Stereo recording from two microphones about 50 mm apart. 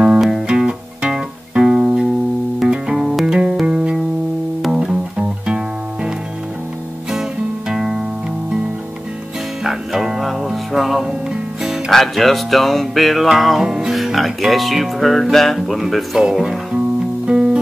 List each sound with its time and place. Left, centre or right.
0.0 s music: centre
7.7 s music: centre
9.6 s music: centre
15.3 s speech: centre
17.3 s music: centre